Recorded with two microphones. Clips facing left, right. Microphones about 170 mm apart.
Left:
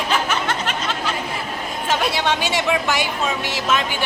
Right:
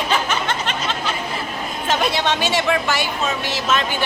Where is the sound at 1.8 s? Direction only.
10° left (ahead or behind).